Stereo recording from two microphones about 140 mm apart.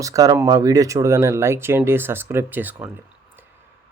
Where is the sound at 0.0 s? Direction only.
25° right (ahead or behind).